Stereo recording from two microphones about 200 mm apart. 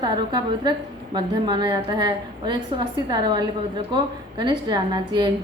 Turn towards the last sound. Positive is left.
turn(degrees=-20)  # may be behind; listen again after turning